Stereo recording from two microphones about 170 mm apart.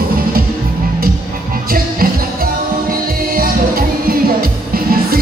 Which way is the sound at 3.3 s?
55° right (ahead or behind).